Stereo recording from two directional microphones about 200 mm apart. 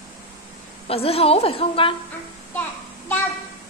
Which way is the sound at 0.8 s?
30° left (ahead or behind).